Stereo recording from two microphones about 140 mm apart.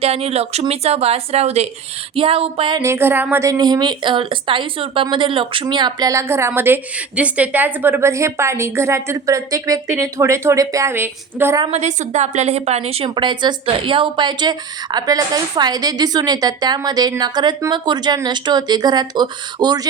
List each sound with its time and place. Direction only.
0.0 s a woman's voice: 45° right (ahead or behind)
2.8 s a woman's voice: 15° right (ahead or behind)
11.7 s a woman's voice: 55° right (ahead or behind)
13.1 s a woman's voice: 35° right (ahead or behind)